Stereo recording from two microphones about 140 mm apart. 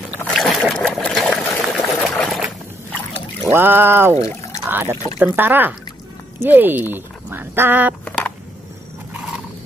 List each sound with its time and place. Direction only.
0.3 s boat: 5° left (ahead or behind)
0.7 s water: centre (ahead or behind)
3.5 s speech: 15° right (ahead or behind)
8.0 s a sound: 10° left (ahead or behind)